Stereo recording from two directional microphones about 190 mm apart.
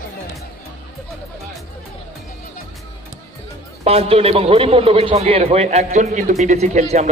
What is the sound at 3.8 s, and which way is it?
A man's voice, 30° right (ahead or behind).